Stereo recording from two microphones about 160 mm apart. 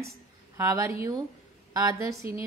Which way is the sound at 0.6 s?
20° right (ahead or behind).